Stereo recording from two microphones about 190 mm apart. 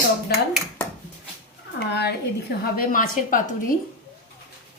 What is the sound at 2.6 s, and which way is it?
A woman's voice, 45° left (ahead or behind).